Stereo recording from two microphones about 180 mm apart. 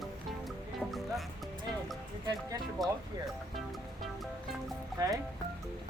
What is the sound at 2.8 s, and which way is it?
Speech, centre (ahead or behind).